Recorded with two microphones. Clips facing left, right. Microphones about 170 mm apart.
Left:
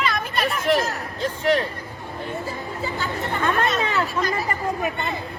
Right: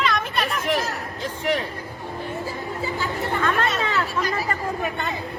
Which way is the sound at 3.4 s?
20° left (ahead or behind).